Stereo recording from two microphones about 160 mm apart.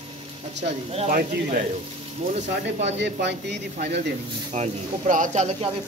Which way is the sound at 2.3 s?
45° right (ahead or behind).